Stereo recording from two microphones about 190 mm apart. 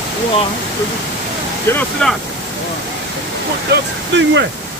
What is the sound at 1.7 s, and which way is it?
Speech, 10° left (ahead or behind).